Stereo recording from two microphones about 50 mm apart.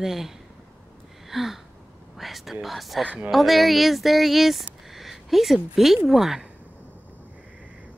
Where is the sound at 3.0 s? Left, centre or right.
Right.